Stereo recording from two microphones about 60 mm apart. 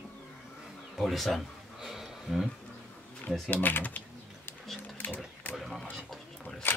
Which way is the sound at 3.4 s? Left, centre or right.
Left.